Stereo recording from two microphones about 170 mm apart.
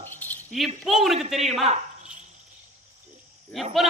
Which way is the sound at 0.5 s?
Centre (ahead or behind).